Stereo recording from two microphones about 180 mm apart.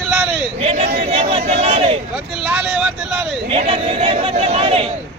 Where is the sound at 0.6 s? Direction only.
35° right (ahead or behind).